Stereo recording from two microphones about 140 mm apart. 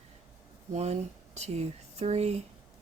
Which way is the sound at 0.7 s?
50° right (ahead or behind).